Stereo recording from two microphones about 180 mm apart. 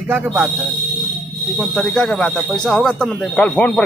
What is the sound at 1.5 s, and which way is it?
Speech, centre (ahead or behind).